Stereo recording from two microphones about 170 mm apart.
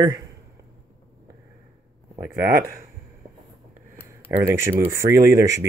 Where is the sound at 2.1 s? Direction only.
15° right (ahead or behind).